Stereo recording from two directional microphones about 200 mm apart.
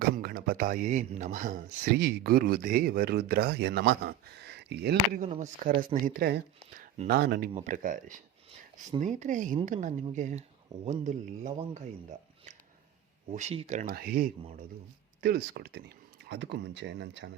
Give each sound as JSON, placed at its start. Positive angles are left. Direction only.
{"t": 0.0, "sound": "speech", "side_deg": -50}
{"t": 5.1, "sound": "speech", "side_deg": -35}
{"t": 6.7, "sound": "a sound", "side_deg": -35}
{"t": 7.1, "sound": "speech", "side_deg": -50}
{"t": 7.5, "sound": "speech", "side_deg": -40}
{"t": 13.3, "sound": "speech", "side_deg": -30}
{"t": 13.9, "sound": "speech", "side_deg": -50}